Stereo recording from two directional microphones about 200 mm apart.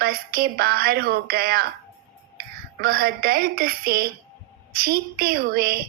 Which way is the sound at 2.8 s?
45° right (ahead or behind).